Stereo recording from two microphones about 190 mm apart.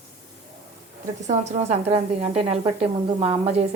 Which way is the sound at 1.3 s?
35° right (ahead or behind).